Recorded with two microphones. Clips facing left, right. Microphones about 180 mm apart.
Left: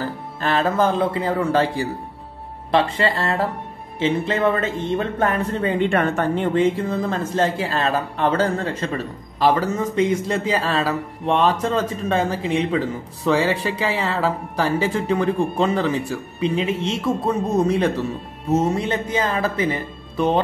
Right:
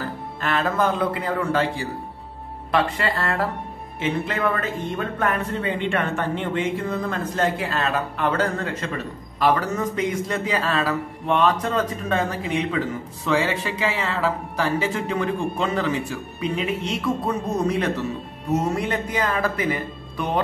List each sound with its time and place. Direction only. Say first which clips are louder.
0.4 s a man's voice: left 3 dB; 30° left (ahead or behind)
5.8 s a man's voice: left 7 dB; 45° left (ahead or behind); by 17.0 s 25° left (ahead or behind)
18.5 s a man's voice: left 3 dB; 25° left (ahead or behind)